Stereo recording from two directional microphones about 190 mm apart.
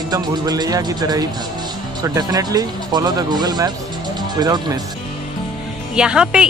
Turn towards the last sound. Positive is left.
turn(degrees=-5)  # may be behind; listen again after turning